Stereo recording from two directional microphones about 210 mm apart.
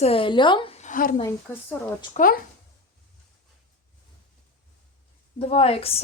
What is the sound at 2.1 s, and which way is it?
Speech, 40° left (ahead or behind).